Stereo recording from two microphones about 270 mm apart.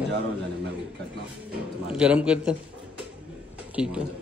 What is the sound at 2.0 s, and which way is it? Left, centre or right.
Speech, centre.